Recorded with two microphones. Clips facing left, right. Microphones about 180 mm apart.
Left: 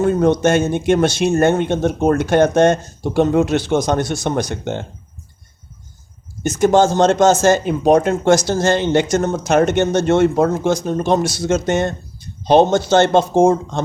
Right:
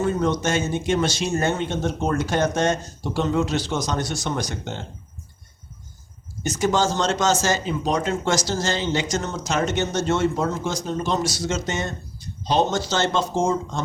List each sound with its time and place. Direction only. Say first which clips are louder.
0.0 s speech: left 8 dB; 55° left (ahead or behind)
6.4 s speech: left 8 dB; 55° left (ahead or behind)